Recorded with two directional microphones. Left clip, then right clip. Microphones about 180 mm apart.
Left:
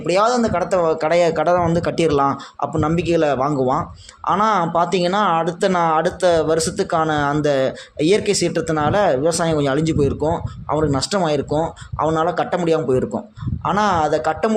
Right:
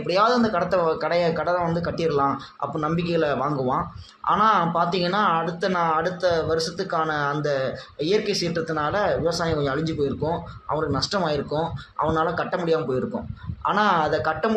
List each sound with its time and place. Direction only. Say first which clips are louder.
0.1 s speech: left 3 dB; 40° left (ahead or behind)